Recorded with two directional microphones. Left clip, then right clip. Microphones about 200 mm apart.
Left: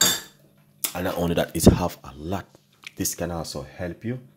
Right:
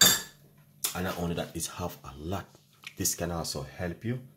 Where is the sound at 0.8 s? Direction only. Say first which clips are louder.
Left 7 dB; 45° left (ahead or behind).